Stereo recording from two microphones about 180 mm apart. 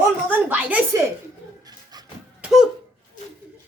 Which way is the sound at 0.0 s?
10° right (ahead or behind).